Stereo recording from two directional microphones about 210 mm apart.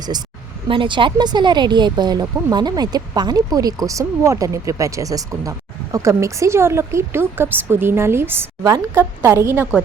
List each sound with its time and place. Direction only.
0.7 s speech: 25° right (ahead or behind)